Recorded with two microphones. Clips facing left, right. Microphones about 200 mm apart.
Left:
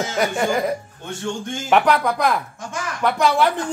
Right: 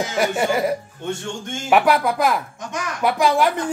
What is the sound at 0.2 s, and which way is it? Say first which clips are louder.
Speech: right 1 dB; 5° right (ahead or behind).